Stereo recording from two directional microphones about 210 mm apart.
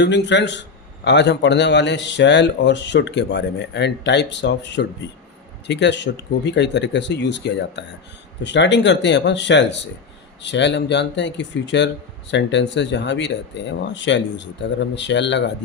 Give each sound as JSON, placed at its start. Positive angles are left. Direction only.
{"t": 0.0, "sound": "speech", "side_deg": 55}